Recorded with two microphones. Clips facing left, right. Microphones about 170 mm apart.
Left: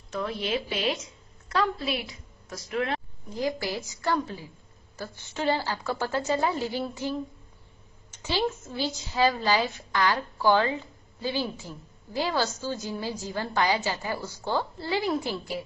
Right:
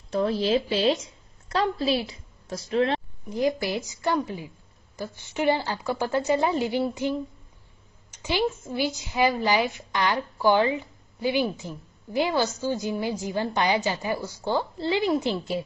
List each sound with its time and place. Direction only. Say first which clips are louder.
0.1 s a woman's voice: right 7 dB; 30° right (ahead or behind)